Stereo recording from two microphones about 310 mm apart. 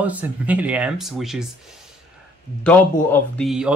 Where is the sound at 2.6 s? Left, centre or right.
Centre.